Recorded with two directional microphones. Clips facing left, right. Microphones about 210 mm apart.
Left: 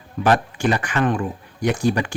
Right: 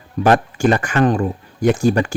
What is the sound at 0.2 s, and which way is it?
Speech, 45° right (ahead or behind).